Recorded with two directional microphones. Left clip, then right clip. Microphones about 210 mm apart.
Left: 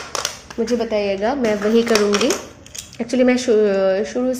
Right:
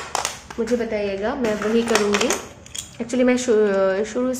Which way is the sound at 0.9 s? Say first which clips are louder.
Left 4 dB; 25° left (ahead or behind).